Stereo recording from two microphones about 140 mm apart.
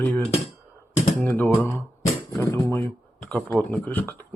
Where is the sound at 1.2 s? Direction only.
10° left (ahead or behind).